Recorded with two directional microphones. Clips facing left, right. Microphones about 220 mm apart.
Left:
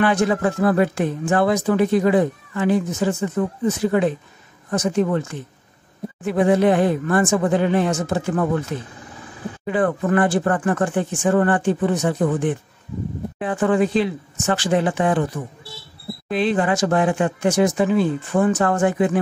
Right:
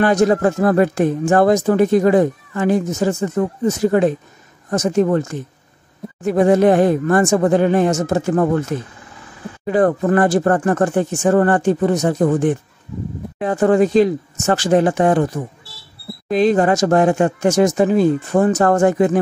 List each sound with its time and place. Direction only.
0.0 s speech: 40° right (ahead or behind)